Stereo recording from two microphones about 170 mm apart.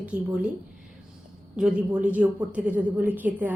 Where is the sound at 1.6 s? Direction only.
5° right (ahead or behind).